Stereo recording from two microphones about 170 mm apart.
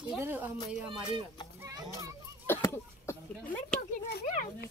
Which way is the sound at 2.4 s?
15° left (ahead or behind).